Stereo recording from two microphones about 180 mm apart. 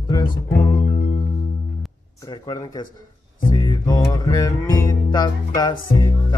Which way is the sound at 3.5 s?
20° left (ahead or behind).